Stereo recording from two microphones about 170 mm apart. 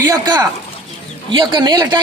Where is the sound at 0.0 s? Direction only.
20° right (ahead or behind).